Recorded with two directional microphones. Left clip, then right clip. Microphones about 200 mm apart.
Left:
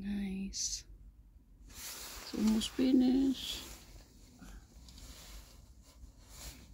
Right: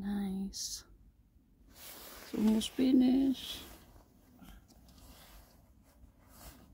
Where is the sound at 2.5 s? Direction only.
20° right (ahead or behind).